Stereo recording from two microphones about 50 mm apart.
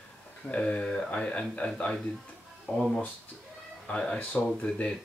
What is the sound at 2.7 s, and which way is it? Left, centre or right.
Speech, centre.